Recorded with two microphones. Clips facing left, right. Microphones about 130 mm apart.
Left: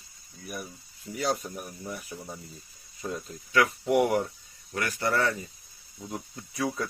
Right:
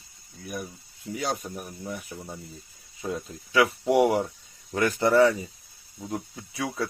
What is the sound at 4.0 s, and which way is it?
Speech, 10° right (ahead or behind).